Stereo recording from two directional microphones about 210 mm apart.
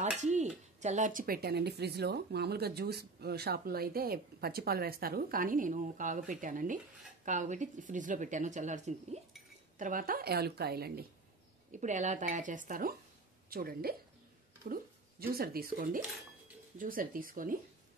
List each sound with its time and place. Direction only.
0.2 s a sound: 35° right (ahead or behind)
0.7 s speech: 35° right (ahead or behind)
11.7 s speech: 35° right (ahead or behind)